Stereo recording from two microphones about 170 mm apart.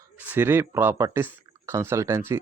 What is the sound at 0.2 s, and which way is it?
Speech, 10° right (ahead or behind).